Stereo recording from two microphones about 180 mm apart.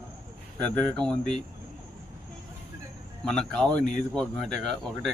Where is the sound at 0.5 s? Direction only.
10° left (ahead or behind).